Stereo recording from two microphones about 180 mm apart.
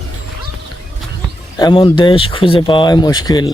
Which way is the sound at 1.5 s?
25° left (ahead or behind).